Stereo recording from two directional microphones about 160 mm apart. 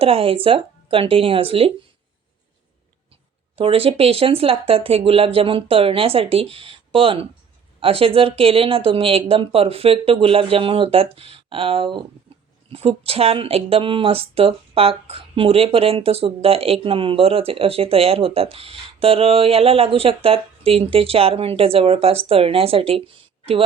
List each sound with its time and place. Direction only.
0.0 s speech: 35° right (ahead or behind)
3.5 s speech: 35° right (ahead or behind)